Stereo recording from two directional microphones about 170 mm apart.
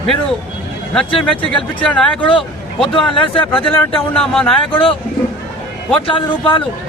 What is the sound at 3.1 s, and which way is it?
Speech, 30° left (ahead or behind).